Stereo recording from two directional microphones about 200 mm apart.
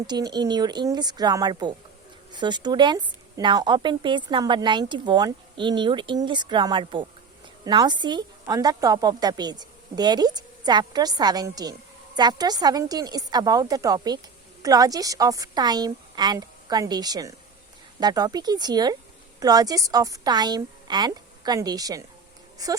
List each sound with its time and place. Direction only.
0.1 s a woman's voice: 20° right (ahead or behind)